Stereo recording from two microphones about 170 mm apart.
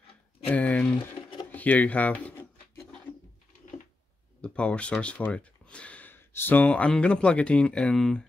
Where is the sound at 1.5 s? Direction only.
10° left (ahead or behind).